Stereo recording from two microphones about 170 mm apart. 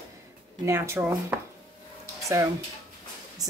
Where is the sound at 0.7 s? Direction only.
15° right (ahead or behind).